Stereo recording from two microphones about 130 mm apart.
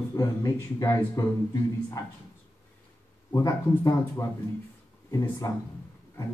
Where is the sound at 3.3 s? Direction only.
25° left (ahead or behind).